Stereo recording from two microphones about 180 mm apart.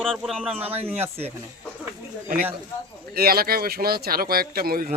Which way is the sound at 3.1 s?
60° right (ahead or behind).